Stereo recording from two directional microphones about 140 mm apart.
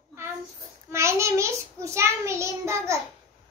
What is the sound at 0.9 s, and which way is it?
Child singing, 20° right (ahead or behind).